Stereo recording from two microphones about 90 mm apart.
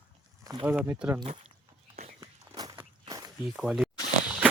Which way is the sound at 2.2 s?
55° right (ahead or behind).